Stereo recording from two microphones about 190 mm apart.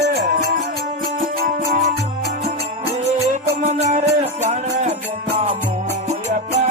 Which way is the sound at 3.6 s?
35° right (ahead or behind).